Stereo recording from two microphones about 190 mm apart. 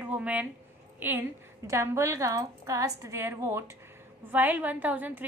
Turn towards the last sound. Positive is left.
turn(degrees=-10)  # may be behind; listen again after turning